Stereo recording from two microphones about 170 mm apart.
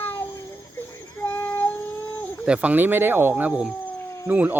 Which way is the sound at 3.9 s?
15° left (ahead or behind).